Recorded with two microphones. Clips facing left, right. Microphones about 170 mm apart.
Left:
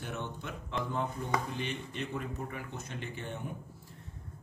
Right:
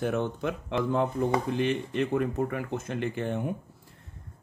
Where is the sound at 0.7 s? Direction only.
90° right.